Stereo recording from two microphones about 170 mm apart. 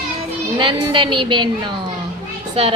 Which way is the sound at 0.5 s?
30° right (ahead or behind).